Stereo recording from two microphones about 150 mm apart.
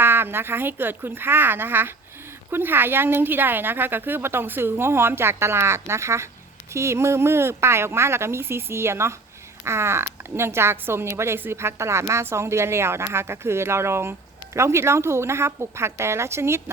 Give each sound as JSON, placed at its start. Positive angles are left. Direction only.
{"t": 0.0, "sound": "speech", "side_deg": -15}